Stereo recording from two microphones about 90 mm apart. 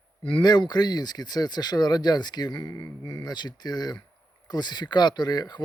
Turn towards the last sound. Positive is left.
turn(degrees=50)  # may be behind; listen again after turning